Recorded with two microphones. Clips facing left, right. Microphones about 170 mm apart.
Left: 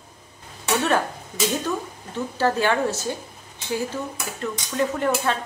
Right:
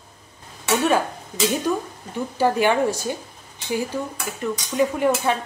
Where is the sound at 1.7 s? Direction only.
15° right (ahead or behind).